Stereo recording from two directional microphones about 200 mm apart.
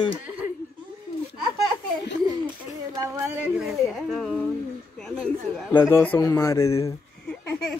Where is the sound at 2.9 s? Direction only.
15° right (ahead or behind).